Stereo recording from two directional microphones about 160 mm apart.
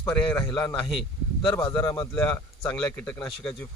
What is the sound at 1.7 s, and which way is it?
A man's voice, 15° left (ahead or behind).